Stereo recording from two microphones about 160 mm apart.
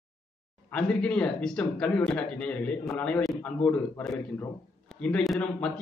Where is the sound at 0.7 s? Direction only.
10° left (ahead or behind).